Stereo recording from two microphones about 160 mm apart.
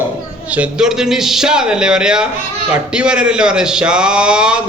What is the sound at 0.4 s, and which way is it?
A man's voice, 10° right (ahead or behind).